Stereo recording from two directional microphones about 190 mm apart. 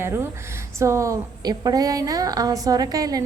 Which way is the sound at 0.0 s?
15° right (ahead or behind).